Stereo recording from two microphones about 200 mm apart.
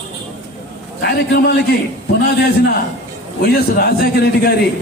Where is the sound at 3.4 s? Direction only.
50° left (ahead or behind).